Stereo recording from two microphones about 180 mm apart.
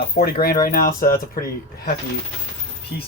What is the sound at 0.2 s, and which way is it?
Speech, 60° left (ahead or behind).